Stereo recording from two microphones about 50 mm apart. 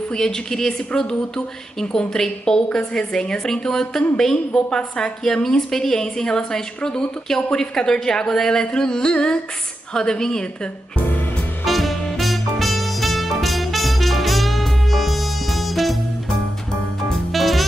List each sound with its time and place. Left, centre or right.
0.1 s speech: centre
11.0 s music: left
11.6 s music: centre
17.3 s music: centre